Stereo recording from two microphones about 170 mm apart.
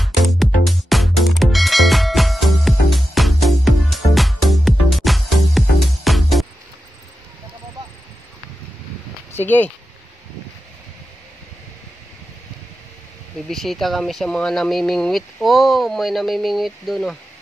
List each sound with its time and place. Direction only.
0.0 s music: centre (ahead or behind)
9.3 s a sound: 10° left (ahead or behind)
13.5 s speech: centre (ahead or behind)